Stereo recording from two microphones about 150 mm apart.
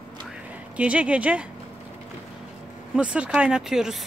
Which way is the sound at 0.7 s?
10° right (ahead or behind).